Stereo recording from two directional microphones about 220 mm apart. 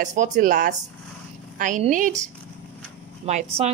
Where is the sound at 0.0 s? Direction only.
35° right (ahead or behind).